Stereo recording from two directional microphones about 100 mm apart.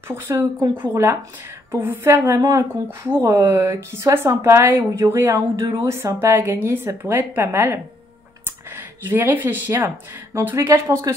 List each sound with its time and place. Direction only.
0.1 s a woman's voice: 30° right (ahead or behind)
8.5 s a sound: 20° right (ahead or behind)
10.4 s a woman's voice: 25° right (ahead or behind)